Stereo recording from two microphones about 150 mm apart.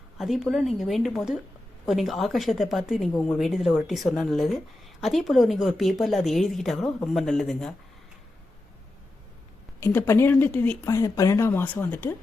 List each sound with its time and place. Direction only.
0.2 s speech: centre (ahead or behind)
9.8 s speech: 15° left (ahead or behind)